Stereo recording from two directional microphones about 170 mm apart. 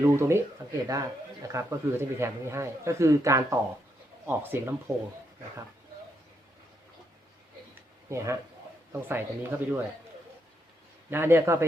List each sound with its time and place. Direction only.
0.0 s speech: 15° right (ahead or behind)
7.8 s a sound: 15° right (ahead or behind)
8.9 s speech: 10° right (ahead or behind)
11.1 s speech: 15° right (ahead or behind)